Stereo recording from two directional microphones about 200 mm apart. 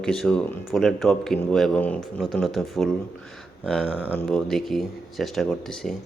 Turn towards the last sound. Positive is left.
turn(degrees=0)  # may be behind; listen again after turning